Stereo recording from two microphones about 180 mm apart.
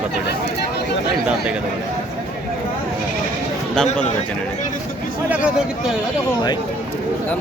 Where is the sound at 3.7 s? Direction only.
5° left (ahead or behind).